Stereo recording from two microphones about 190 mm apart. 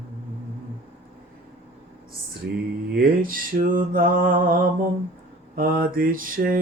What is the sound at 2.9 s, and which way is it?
Mantra, 50° right (ahead or behind).